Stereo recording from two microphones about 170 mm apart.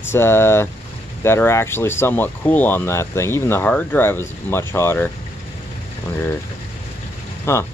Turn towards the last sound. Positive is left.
turn(degrees=15)  # may be behind; listen again after turning